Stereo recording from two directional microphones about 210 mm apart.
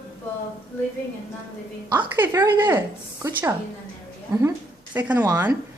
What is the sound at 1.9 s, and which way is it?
Speech, 10° right (ahead or behind).